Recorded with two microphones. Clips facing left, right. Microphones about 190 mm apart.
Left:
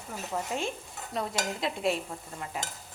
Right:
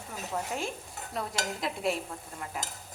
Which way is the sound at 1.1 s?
Centre (ahead or behind).